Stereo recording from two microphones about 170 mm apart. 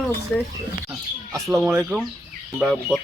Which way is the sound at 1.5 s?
15° right (ahead or behind).